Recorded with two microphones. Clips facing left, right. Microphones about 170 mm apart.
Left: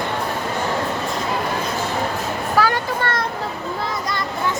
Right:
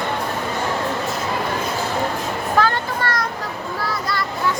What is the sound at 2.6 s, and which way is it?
Children playing, 10° left (ahead or behind).